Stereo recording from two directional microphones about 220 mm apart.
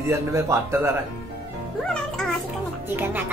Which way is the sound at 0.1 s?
15° right (ahead or behind).